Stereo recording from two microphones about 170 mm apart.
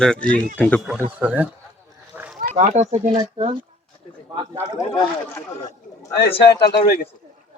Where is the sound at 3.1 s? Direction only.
30° right (ahead or behind).